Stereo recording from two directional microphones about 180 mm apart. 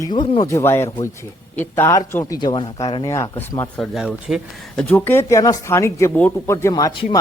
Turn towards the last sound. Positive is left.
turn(degrees=25)  # may be behind; listen again after turning